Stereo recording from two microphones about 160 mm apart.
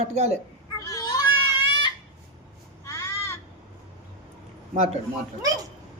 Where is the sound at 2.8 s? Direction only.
20° left (ahead or behind).